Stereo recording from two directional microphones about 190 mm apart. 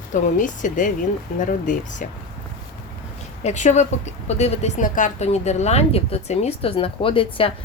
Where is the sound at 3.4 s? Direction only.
40° left (ahead or behind).